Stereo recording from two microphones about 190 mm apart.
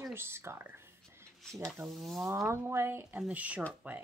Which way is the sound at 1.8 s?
Centre (ahead or behind).